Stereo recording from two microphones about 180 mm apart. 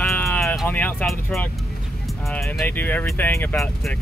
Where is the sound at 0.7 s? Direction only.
10° left (ahead or behind).